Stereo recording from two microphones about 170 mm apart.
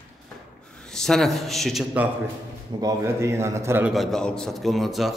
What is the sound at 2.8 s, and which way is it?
A man's voice, 20° right (ahead or behind).